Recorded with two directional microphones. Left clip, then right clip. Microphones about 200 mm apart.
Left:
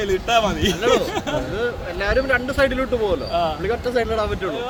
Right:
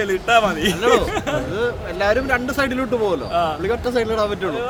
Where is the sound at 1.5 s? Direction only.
65° right (ahead or behind).